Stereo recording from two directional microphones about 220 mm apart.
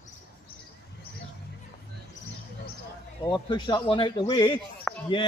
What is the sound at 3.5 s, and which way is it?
A man's voice, 20° left (ahead or behind).